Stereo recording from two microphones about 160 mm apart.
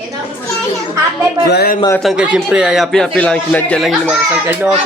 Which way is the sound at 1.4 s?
80° left.